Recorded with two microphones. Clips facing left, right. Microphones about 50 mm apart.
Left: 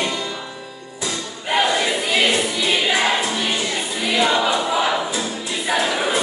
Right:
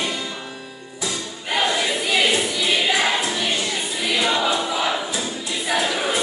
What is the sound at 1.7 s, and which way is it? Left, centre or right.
Music, centre.